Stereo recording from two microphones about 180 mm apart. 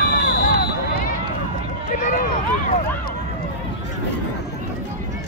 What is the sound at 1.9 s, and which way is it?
Run, 50° left (ahead or behind).